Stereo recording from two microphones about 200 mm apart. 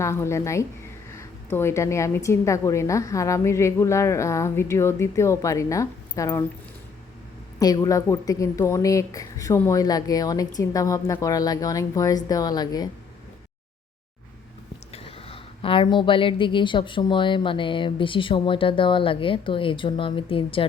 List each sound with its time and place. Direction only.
0.0 s a woman's voice: 15° left (ahead or behind)
7.6 s a woman's voice: 20° left (ahead or behind)
14.9 s a woman's voice: 30° left (ahead or behind)